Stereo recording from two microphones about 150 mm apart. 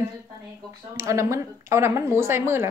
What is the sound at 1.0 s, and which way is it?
A woman's voice, 20° right (ahead or behind).